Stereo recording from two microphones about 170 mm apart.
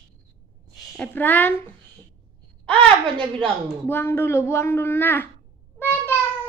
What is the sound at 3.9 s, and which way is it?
Speech, 10° left (ahead or behind).